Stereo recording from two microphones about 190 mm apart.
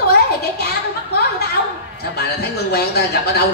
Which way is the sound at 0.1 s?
55° left (ahead or behind).